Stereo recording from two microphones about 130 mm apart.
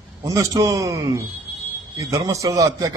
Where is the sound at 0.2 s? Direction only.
25° right (ahead or behind).